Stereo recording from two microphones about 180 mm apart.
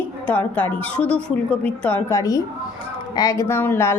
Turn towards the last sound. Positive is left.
turn(degrees=15)  # may be behind; listen again after turning